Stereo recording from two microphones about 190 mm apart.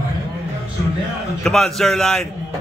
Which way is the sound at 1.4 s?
5° left (ahead or behind).